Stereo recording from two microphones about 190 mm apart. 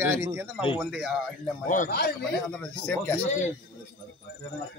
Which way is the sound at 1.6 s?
45° left (ahead or behind).